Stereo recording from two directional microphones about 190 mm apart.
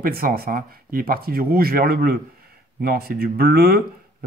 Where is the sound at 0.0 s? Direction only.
50° right (ahead or behind).